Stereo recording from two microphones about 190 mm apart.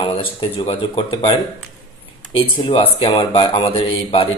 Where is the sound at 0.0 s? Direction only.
25° left (ahead or behind).